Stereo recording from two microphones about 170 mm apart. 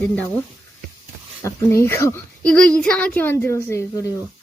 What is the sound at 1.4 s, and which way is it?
A woman's voice, 15° left (ahead or behind).